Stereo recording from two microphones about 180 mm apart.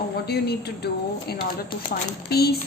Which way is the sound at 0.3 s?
65° left (ahead or behind).